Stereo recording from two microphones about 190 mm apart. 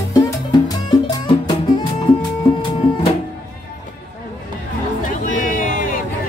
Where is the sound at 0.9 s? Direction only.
20° left (ahead or behind).